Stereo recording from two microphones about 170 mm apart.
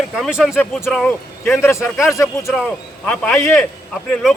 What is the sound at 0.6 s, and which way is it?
Speech, 10° left (ahead or behind).